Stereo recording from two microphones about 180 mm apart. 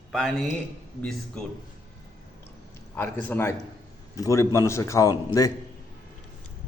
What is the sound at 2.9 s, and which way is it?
A man's voice, 10° left (ahead or behind).